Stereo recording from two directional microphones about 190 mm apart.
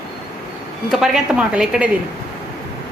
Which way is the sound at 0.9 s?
Centre (ahead or behind).